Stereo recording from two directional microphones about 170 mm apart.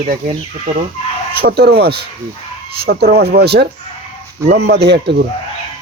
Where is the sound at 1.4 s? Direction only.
65° right (ahead or behind).